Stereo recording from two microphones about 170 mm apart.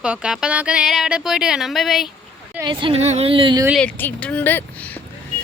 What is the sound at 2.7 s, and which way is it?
Speech, 30° right (ahead or behind).